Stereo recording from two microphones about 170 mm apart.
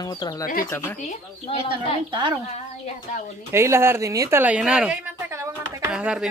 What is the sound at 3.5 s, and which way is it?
Speech, 15° right (ahead or behind).